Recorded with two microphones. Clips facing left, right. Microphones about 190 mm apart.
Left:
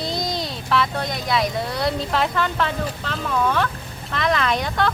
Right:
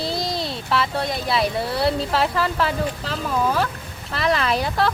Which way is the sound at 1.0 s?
30° right (ahead or behind).